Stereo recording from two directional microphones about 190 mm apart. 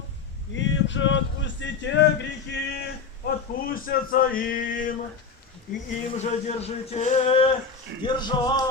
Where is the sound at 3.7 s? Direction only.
50° left (ahead or behind).